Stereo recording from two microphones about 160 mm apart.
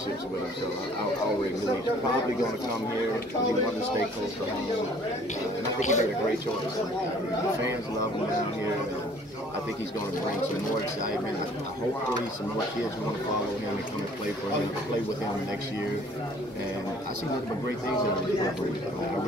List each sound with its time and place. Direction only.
5.8 s speech: 50° left (ahead or behind)